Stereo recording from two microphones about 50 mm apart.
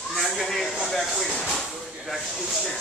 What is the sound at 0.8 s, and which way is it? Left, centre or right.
Speech, centre.